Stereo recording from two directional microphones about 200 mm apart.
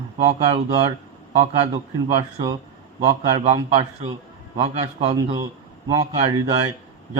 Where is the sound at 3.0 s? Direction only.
30° right (ahead or behind).